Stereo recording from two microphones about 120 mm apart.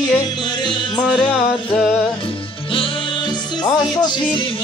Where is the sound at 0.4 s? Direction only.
40° left (ahead or behind).